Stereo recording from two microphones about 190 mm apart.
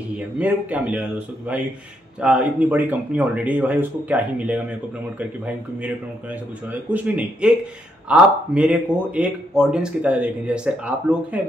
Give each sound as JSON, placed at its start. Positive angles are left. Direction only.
{"t": 0.4, "sound": "speech", "side_deg": -10}
{"t": 6.9, "sound": "speech", "side_deg": -10}